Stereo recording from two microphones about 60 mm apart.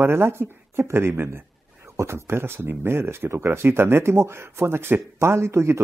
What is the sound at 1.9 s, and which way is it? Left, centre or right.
Speech, right.